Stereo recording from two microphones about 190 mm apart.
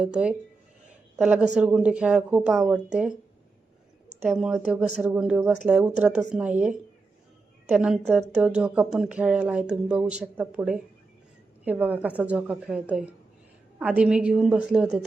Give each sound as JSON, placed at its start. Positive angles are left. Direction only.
{"t": 0.0, "sound": "speech", "side_deg": -5}
{"t": 4.3, "sound": "a woman's voice", "side_deg": -5}